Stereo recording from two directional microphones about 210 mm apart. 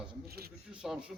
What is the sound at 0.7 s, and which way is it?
Speech, 5° right (ahead or behind).